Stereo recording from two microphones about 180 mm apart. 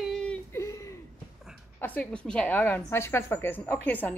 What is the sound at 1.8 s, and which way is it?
A woman's voice, 10° left (ahead or behind).